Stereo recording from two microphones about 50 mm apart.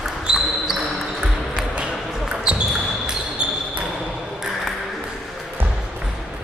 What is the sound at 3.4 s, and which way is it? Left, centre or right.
Basketball bounce, right.